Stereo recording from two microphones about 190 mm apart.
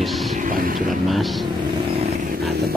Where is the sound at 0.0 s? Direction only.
Centre (ahead or behind).